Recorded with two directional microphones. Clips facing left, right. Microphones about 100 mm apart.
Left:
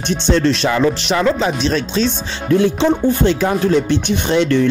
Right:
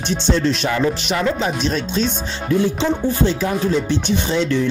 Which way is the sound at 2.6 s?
65° left (ahead or behind).